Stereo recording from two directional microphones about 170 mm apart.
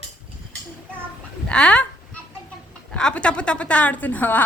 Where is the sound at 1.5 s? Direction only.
5° left (ahead or behind).